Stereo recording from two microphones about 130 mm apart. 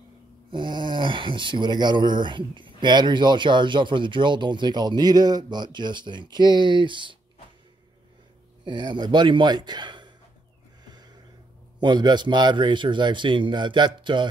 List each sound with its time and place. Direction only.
0.5 s speech: 35° right (ahead or behind)
8.6 s speech: 35° right (ahead or behind)
10.9 s a sound: 35° right (ahead or behind)
11.8 s speech: 35° right (ahead or behind)